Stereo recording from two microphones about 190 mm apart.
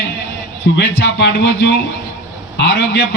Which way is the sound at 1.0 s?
70° left (ahead or behind).